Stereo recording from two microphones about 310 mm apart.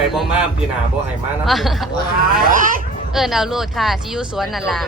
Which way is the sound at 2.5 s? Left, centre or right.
Right.